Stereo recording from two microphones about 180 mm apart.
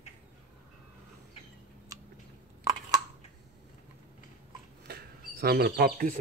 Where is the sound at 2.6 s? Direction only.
20° right (ahead or behind).